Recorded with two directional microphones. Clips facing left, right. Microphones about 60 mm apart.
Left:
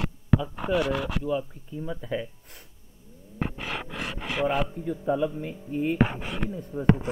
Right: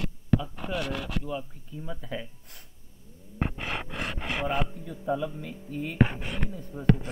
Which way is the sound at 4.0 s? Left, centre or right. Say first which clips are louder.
Left 3 dB; right.